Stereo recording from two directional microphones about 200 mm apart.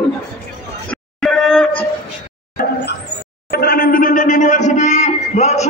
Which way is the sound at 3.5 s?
50° left (ahead or behind).